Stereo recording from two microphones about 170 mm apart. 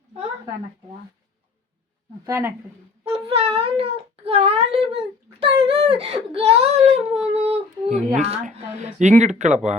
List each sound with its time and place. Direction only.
2.2 s speech: 15° right (ahead or behind)
3.0 s a child's voice: 35° right (ahead or behind)